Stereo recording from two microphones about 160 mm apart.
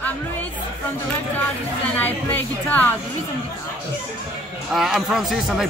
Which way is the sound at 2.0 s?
10° left (ahead or behind).